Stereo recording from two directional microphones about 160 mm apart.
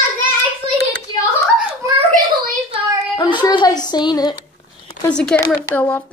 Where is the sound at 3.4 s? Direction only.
25° left (ahead or behind).